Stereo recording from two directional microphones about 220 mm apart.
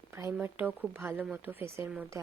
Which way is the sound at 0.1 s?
10° right (ahead or behind).